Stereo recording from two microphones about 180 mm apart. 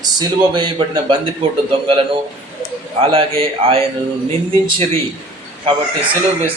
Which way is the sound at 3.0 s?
30° right (ahead or behind).